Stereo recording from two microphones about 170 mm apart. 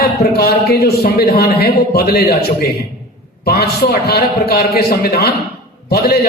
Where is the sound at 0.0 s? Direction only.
65° left (ahead or behind).